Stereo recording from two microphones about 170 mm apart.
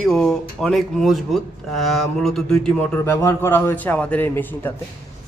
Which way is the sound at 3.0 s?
15° left (ahead or behind).